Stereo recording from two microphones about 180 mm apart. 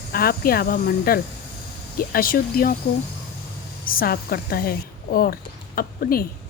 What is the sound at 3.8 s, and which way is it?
A woman's voice, 55° left (ahead or behind).